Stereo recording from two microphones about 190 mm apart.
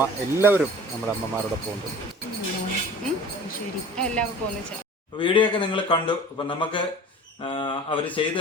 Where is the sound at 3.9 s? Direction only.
5° left (ahead or behind).